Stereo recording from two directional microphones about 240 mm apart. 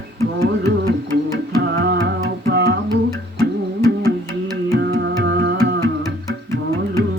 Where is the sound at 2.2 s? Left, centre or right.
Right.